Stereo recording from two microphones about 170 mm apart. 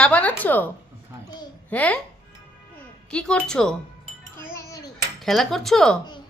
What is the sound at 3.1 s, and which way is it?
Speech, 5° left (ahead or behind).